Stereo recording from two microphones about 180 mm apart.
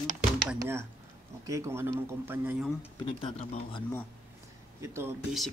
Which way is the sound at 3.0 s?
35° left (ahead or behind).